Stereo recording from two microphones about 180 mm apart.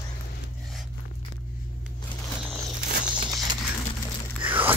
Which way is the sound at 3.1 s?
25° right (ahead or behind).